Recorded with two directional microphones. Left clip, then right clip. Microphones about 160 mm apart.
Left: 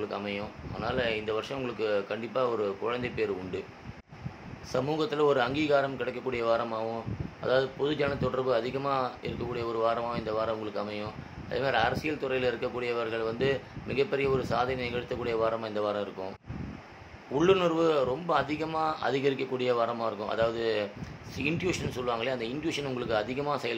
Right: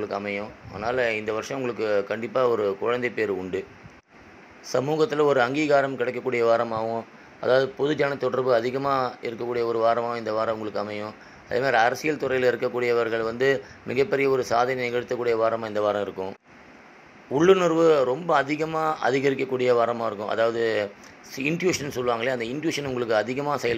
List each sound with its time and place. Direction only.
0.1 s speech: 40° right (ahead or behind)
4.6 s speech: 35° right (ahead or behind)
17.3 s speech: 35° right (ahead or behind)